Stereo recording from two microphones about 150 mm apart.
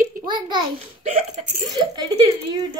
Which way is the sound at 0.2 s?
30° right (ahead or behind).